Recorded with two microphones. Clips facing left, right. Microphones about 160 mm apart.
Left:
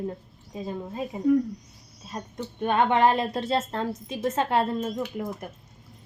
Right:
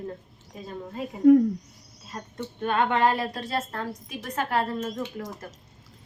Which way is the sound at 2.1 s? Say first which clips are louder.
Left 2 dB; 20° left (ahead or behind).